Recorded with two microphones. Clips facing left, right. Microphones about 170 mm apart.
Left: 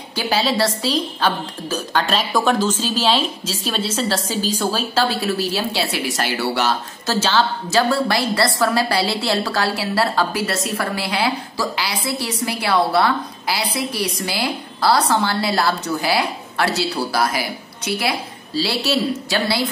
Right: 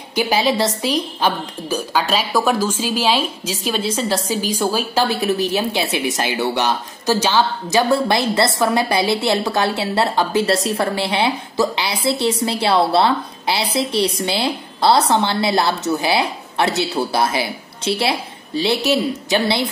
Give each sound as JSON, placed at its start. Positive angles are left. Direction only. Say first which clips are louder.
{"t": 0.1, "sound": "speech", "louder": "right 3 dB", "side_deg": -15}